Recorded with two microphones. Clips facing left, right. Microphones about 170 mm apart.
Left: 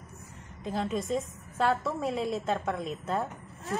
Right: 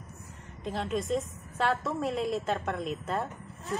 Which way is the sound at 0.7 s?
Centre (ahead or behind).